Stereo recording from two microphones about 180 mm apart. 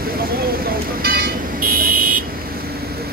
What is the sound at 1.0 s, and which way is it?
Vehicle, 55° right (ahead or behind).